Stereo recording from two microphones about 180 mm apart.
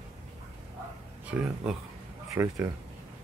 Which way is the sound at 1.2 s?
5° right (ahead or behind).